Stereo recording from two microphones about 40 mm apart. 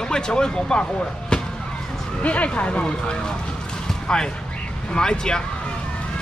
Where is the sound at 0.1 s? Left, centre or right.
Centre.